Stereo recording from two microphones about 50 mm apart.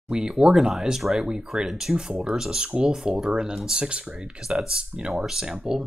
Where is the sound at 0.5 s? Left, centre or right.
Centre.